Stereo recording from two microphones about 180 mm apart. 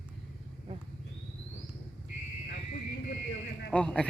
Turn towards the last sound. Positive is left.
turn(degrees=5)  # may be behind; listen again after turning